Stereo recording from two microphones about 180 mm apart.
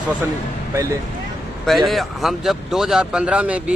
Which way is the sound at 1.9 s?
Centre (ahead or behind).